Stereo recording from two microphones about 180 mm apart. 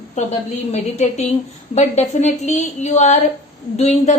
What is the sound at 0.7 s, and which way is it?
A woman's voice, 40° left (ahead or behind).